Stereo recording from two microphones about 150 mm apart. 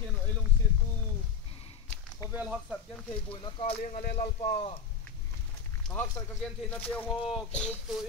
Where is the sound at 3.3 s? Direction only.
40° left (ahead or behind).